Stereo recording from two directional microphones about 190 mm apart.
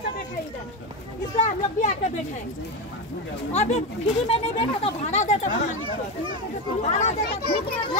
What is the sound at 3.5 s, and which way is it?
Speech, 35° left (ahead or behind).